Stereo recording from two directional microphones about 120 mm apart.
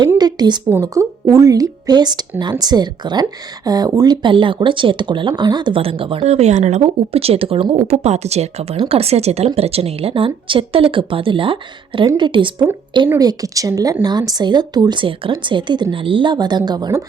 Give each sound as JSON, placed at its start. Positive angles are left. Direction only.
{"t": 0.2, "sound": "a sound", "side_deg": -35}
{"t": 0.7, "sound": "a woman's voice", "side_deg": -25}
{"t": 13.1, "sound": "speech", "side_deg": -30}